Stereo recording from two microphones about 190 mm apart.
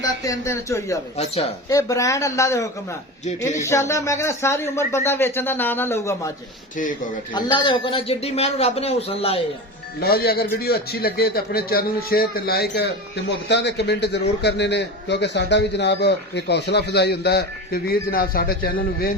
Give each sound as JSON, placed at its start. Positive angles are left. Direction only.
{"t": 0.0, "sound": "speech", "side_deg": 15}
{"t": 7.3, "sound": "speech", "side_deg": 25}
{"t": 10.0, "sound": "speech", "side_deg": 55}